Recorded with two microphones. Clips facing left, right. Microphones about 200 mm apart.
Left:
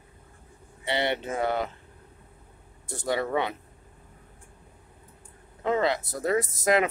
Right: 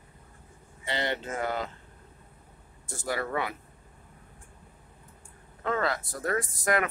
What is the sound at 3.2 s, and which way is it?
Speech, 20° left (ahead or behind).